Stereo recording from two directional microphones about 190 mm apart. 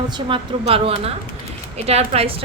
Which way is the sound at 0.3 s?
30° right (ahead or behind).